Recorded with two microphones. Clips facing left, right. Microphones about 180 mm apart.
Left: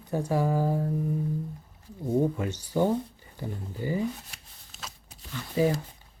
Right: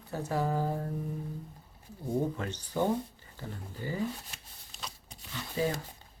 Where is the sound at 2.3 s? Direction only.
10° left (ahead or behind).